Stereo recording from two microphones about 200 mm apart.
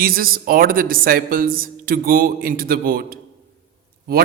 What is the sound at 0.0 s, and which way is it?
A man's voice, 45° right (ahead or behind).